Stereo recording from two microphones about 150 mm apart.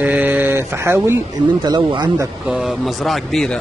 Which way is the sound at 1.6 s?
30° right (ahead or behind).